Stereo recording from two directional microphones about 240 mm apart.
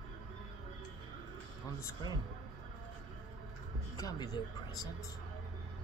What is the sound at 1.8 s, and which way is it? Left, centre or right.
Speech, centre.